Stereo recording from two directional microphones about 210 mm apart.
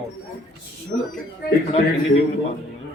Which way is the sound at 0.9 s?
40° left (ahead or behind).